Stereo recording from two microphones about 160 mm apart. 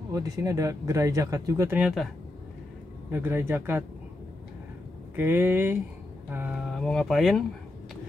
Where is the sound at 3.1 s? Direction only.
15° right (ahead or behind).